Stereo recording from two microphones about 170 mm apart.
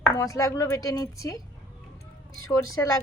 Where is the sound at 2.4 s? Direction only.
20° left (ahead or behind).